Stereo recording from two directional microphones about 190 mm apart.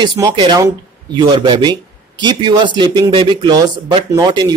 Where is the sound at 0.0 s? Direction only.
20° right (ahead or behind).